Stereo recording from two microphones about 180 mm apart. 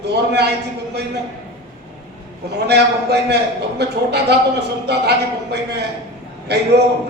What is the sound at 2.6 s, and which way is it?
A man's voice, 65° right (ahead or behind).